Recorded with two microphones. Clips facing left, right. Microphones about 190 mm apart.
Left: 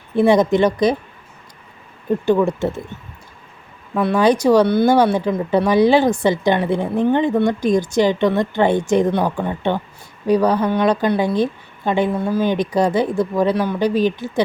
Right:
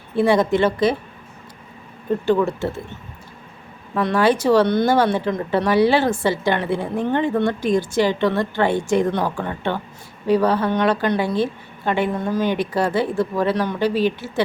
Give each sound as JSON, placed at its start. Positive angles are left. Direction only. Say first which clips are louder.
{"t": 0.2, "sound": "speech", "louder": "left 3 dB", "side_deg": 20}
{"t": 2.2, "sound": "speech", "louder": "left 3 dB", "side_deg": 15}
{"t": 3.9, "sound": "speech", "louder": "left 2 dB", "side_deg": 15}